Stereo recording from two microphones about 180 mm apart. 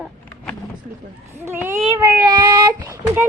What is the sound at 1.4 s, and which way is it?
A child's voice, 15° right (ahead or behind).